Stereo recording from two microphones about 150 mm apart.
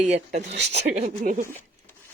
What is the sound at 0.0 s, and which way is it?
Speech, 50° right (ahead or behind).